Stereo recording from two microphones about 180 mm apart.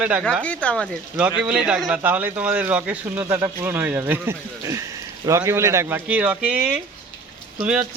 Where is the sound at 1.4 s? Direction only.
5° right (ahead or behind).